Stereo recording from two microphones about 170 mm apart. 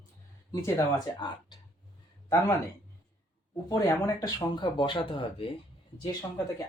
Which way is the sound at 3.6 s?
20° left (ahead or behind).